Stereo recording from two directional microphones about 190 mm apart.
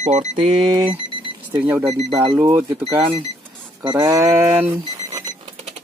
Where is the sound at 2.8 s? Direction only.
30° right (ahead or behind).